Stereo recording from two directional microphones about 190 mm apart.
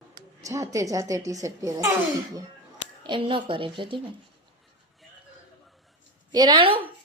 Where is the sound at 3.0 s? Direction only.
25° right (ahead or behind).